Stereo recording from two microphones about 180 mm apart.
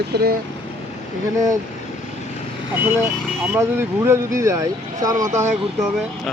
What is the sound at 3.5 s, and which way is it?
Speech, 15° right (ahead or behind).